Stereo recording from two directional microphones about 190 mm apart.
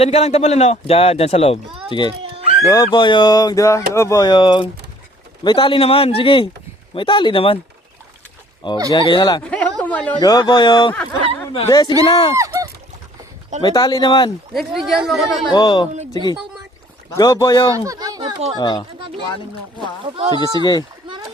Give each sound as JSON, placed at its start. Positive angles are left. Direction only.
{"t": 0.0, "sound": "speech", "side_deg": 35}
{"t": 2.2, "sound": "a sound", "side_deg": -30}
{"t": 2.6, "sound": "speech", "side_deg": 20}
{"t": 8.9, "sound": "speech", "side_deg": 25}
{"t": 9.4, "sound": "a sound", "side_deg": 5}
{"t": 10.2, "sound": "speech", "side_deg": 20}
{"t": 12.4, "sound": "a sound", "side_deg": -15}
{"t": 13.6, "sound": "speech", "side_deg": 20}
{"t": 14.5, "sound": "speech", "side_deg": 0}
{"t": 15.5, "sound": "speech", "side_deg": 25}
{"t": 17.2, "sound": "speech", "side_deg": 20}
{"t": 17.7, "sound": "speech", "side_deg": -20}
{"t": 18.5, "sound": "speech", "side_deg": 20}
{"t": 18.9, "sound": "speech", "side_deg": -25}